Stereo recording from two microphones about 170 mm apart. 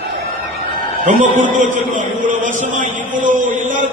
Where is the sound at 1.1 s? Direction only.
45° right (ahead or behind).